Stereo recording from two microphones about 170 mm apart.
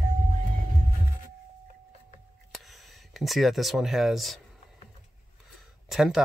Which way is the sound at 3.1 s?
Centre (ahead or behind).